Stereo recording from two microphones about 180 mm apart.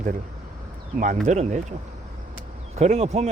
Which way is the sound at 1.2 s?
40° right (ahead or behind).